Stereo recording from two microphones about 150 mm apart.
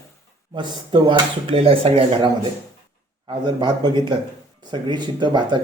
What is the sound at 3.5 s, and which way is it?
Speech, 30° right (ahead or behind).